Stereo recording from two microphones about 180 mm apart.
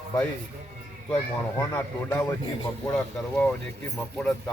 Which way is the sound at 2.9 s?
5° left (ahead or behind).